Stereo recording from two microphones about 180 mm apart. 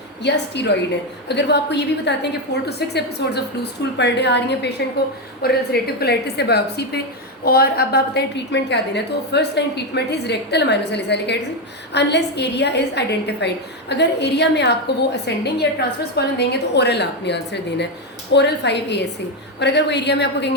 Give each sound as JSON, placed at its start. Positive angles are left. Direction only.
{"t": 0.2, "sound": "a woman's voice", "side_deg": 70}
{"t": 5.4, "sound": "a woman's voice", "side_deg": 60}